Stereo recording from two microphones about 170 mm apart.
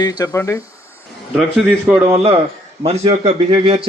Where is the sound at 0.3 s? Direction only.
15° left (ahead or behind).